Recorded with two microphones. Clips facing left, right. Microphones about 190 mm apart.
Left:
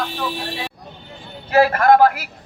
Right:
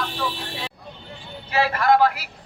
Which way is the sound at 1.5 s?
50° left (ahead or behind).